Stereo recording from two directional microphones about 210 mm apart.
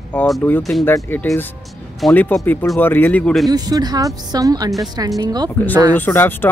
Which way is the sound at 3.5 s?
15° right (ahead or behind).